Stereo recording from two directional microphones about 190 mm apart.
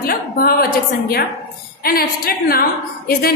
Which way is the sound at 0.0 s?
50° left (ahead or behind).